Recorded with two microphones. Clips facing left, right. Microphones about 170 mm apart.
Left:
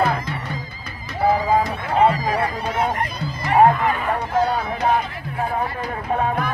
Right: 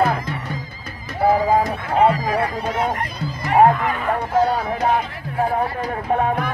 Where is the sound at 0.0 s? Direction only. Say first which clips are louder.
Right 1 dB; 45° right (ahead or behind).